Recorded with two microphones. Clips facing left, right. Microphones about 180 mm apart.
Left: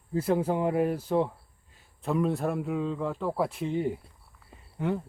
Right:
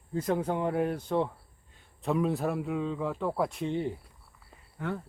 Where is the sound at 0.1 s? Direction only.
5° left (ahead or behind).